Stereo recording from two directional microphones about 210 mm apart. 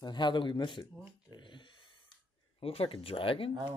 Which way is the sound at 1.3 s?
20° left (ahead or behind).